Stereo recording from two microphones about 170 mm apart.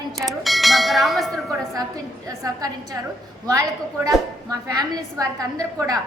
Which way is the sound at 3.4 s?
20° right (ahead or behind).